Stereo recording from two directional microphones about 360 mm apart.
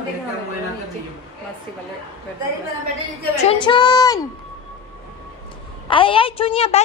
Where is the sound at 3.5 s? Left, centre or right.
Centre.